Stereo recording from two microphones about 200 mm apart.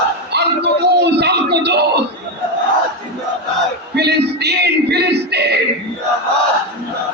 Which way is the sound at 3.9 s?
55° right (ahead or behind).